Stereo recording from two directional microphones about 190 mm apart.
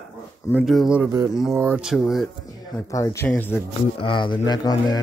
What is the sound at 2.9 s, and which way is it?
Speech, 15° left (ahead or behind).